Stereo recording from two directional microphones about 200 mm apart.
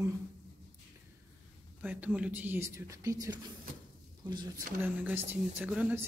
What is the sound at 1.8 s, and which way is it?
Speech, 10° right (ahead or behind).